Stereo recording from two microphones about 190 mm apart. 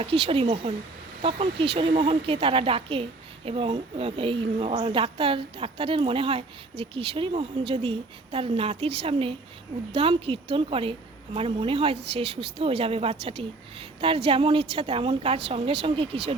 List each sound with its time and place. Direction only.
0.0 s a woman's voice: 30° right (ahead or behind)